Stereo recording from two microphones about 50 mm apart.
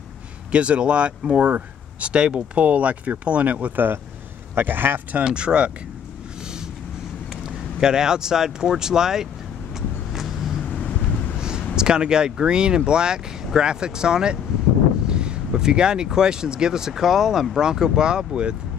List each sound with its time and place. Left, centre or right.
0.5 s speech: right
4.6 s a man's voice: right
5.1 s speech: right
7.4 s speech: centre
9.8 s vehicle: centre
10.6 s vehicle: left
11.3 s a sound: centre
11.7 s speech: centre